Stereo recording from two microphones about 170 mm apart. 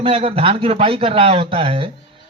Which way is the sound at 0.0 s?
35° right (ahead or behind).